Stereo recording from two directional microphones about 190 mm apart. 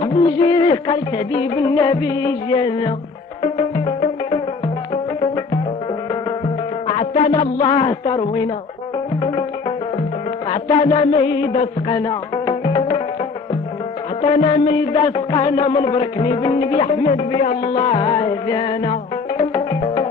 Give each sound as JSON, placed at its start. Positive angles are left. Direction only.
{"t": 0.0, "sound": "music", "side_deg": 30}
{"t": 6.9, "sound": "a man's voice", "side_deg": 35}
{"t": 10.5, "sound": "music", "side_deg": 30}
{"t": 14.2, "sound": "music", "side_deg": 30}